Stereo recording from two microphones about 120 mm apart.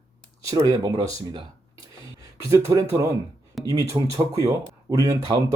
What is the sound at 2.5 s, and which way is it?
Speech, 25° right (ahead or behind).